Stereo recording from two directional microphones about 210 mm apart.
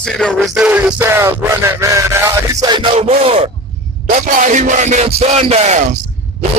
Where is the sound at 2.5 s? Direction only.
20° right (ahead or behind).